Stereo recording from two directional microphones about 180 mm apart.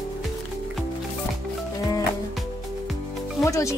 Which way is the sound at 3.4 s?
15° left (ahead or behind).